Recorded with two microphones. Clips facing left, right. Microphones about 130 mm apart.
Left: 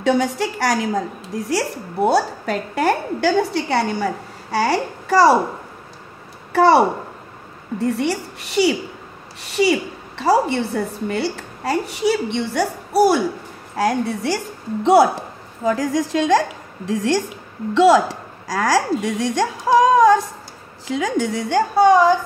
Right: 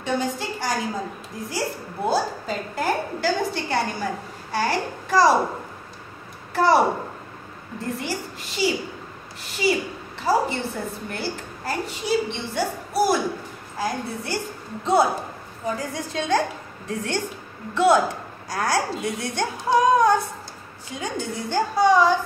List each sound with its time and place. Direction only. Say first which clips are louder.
0.0 s a woman's voice: left 7 dB; 80° left
6.5 s a woman's voice: left 5 dB; 70° left (ahead or behind)
7.8 s a woman's voice: left 8 dB; 75° left (ahead or behind); by 22.1 s 50° left (ahead or behind)